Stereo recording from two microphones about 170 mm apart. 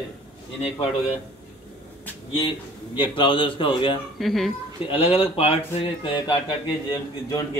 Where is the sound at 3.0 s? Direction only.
30° left (ahead or behind).